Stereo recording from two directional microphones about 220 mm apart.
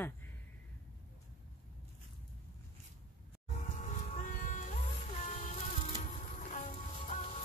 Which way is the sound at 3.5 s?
35° left (ahead or behind).